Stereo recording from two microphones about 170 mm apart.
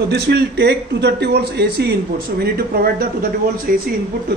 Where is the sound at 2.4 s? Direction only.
65° right (ahead or behind).